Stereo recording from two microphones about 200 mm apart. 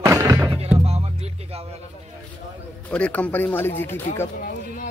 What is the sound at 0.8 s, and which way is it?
Music, 30° right (ahead or behind).